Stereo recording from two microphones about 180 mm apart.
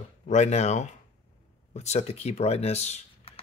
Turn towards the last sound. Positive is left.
turn(degrees=35)  # may be behind; listen again after turning